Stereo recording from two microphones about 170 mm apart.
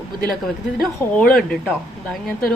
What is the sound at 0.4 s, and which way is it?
A woman's voice, centre (ahead or behind).